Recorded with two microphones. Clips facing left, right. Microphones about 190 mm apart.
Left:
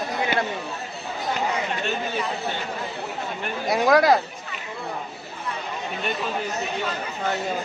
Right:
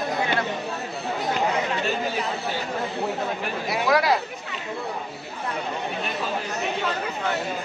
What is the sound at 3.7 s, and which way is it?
Speech, 45° left (ahead or behind).